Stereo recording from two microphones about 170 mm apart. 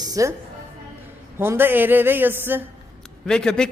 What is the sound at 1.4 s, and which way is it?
A man's voice, 15° right (ahead or behind).